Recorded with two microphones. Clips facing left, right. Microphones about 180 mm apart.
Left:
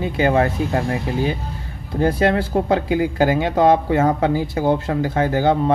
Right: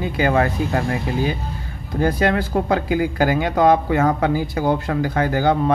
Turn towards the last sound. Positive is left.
turn(degrees=25)  # may be behind; listen again after turning